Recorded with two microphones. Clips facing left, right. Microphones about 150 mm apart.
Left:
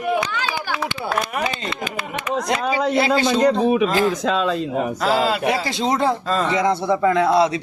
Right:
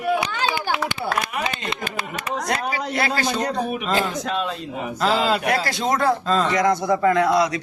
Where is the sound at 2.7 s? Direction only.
20° left (ahead or behind).